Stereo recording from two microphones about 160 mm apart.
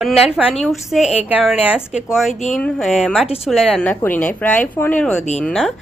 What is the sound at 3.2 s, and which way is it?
Speech, 40° left (ahead or behind).